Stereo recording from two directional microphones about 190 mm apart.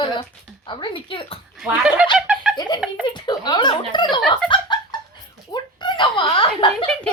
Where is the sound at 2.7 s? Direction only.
25° left (ahead or behind).